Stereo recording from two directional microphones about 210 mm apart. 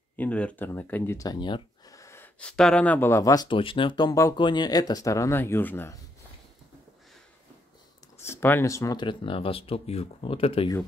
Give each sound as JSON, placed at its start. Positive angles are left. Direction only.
{"t": 0.1, "sound": "speech", "side_deg": 5}
{"t": 8.2, "sound": "speech", "side_deg": 10}